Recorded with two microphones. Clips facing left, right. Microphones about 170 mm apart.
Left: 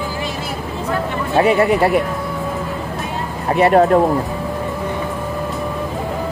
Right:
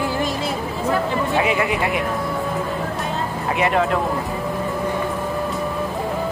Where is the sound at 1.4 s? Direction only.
35° left (ahead or behind).